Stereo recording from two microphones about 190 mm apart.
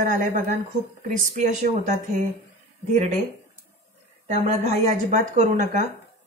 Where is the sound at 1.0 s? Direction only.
40° right (ahead or behind).